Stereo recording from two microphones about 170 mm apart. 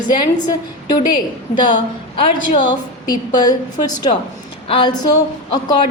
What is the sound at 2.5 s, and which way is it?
A woman's voice, 25° left (ahead or behind).